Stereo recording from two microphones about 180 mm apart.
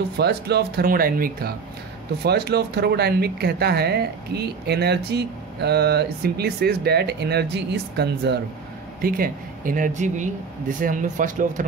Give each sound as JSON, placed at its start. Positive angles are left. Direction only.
{"t": 0.2, "sound": "speech", "side_deg": -65}
{"t": 2.2, "sound": "speech", "side_deg": -65}
{"t": 9.0, "sound": "speech", "side_deg": -55}